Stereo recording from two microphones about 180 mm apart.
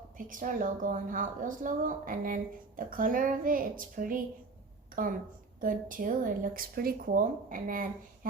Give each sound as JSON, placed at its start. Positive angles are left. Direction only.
{"t": 0.3, "sound": "speech", "side_deg": -45}